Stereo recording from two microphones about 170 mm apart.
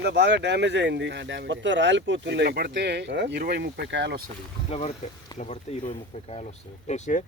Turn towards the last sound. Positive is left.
turn(degrees=45)  # may be behind; listen again after turning